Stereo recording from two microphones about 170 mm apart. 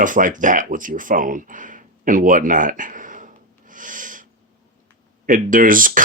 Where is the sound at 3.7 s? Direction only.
50° right (ahead or behind).